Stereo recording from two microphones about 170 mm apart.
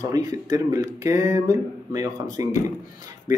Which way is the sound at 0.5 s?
20° right (ahead or behind).